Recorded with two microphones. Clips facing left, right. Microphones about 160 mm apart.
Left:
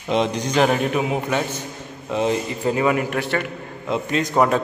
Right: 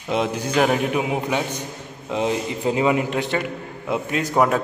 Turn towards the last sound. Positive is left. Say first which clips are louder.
# left 1 dB
turn(degrees=-5)  # may be behind; listen again after turning